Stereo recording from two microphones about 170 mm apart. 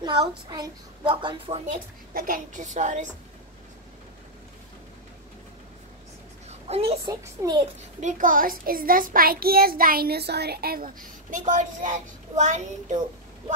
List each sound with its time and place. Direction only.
0.0 s a child's voice: 25° right (ahead or behind)
2.1 s a woman's voice: 55° right (ahead or behind)
6.7 s a child's voice: 35° right (ahead or behind)
7.1 s a child's voice: 20° right (ahead or behind)
8.0 s a child's voice: 50° right (ahead or behind)